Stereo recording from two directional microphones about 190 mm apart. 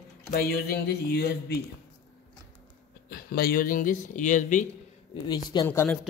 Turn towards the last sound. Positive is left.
turn(degrees=10)  # may be behind; listen again after turning